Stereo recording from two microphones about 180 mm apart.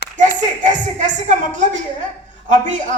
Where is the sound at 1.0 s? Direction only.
45° right (ahead or behind).